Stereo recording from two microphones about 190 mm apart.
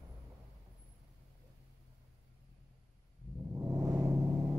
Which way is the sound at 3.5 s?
15° right (ahead or behind).